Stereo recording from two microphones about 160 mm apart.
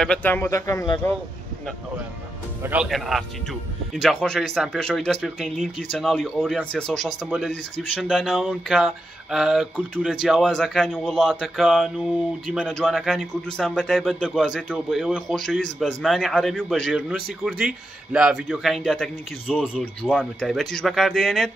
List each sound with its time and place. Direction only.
0.0 s speech: 10° left (ahead or behind)
2.6 s speech: 5° right (ahead or behind)
19.8 s speech: 10° left (ahead or behind)